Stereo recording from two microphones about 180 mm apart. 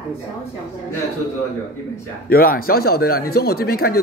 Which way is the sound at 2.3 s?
55° left (ahead or behind).